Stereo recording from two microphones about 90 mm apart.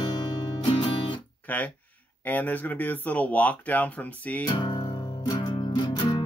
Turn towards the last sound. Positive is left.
turn(degrees=55)  # may be behind; listen again after turning